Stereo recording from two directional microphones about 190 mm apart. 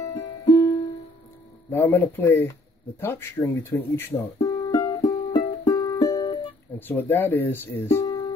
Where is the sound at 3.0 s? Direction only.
10° left (ahead or behind).